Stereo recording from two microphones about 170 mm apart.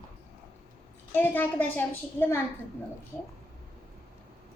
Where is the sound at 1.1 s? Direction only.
10° left (ahead or behind).